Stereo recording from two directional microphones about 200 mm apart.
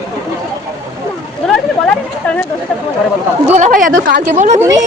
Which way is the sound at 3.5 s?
40° right (ahead or behind).